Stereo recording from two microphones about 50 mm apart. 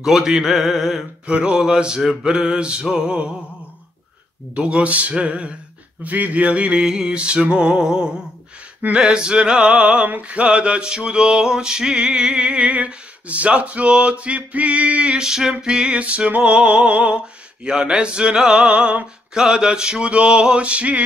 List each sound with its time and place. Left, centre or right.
0.0 s a sound: centre
1.4 s music: centre
4.6 s male singing: right
6.8 s music: centre
8.9 s male singing: centre
10.0 s male singing: right
15.1 s music: centre
15.6 s male singing: centre
17.6 s music: centre
18.7 s a sound: right
19.4 s male singing: centre